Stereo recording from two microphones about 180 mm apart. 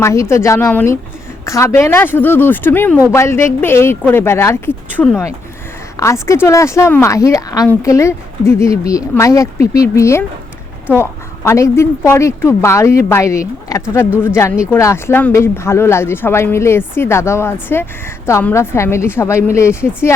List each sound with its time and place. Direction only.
0.0 s speech: 15° left (ahead or behind)